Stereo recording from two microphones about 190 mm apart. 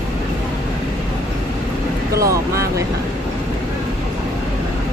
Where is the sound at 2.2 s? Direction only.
15° right (ahead or behind).